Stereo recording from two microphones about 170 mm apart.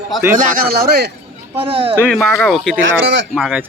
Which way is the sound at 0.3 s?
55° right (ahead or behind).